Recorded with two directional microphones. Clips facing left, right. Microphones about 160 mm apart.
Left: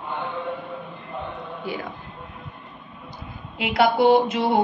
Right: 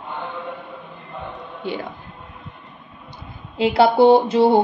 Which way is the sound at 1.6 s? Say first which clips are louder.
Right 4 dB; 30° right (ahead or behind).